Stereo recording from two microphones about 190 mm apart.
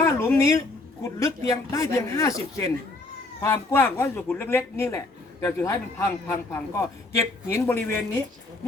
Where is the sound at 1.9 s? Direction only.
15° left (ahead or behind).